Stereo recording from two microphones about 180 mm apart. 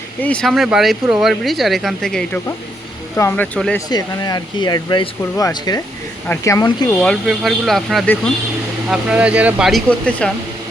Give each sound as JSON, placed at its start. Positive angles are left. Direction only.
{"t": 0.2, "sound": "speech", "side_deg": 5}
{"t": 3.8, "sound": "speech", "side_deg": 20}
{"t": 6.8, "sound": "speech", "side_deg": 5}